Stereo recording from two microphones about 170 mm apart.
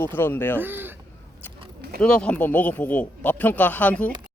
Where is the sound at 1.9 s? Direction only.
5° left (ahead or behind).